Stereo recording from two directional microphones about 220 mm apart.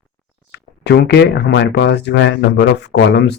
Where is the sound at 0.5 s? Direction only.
50° left (ahead or behind).